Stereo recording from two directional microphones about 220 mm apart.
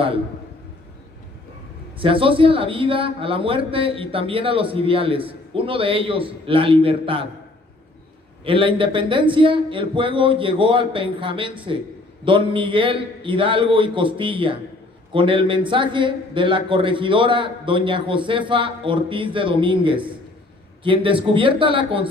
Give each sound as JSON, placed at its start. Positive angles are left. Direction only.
{"t": 2.0, "sound": "a man's voice", "side_deg": -25}
{"t": 8.5, "sound": "a man's voice", "side_deg": -25}